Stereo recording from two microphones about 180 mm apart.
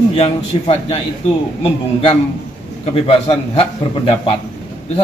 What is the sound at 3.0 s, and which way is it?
Speech, 30° left (ahead or behind).